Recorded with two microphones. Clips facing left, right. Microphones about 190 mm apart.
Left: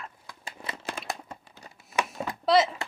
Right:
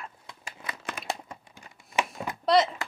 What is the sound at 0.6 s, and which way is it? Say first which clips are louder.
Crumpling: left 1 dB; 30° left (ahead or behind).